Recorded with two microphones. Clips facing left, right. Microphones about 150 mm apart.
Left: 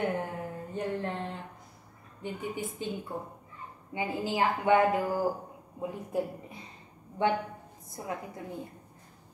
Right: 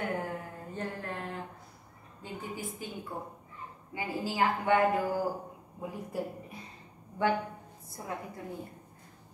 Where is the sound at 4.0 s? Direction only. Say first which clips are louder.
Left 1 dB; 20° left (ahead or behind).